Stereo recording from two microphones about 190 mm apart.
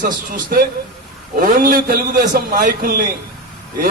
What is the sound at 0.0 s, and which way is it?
A man's voice, 50° right (ahead or behind).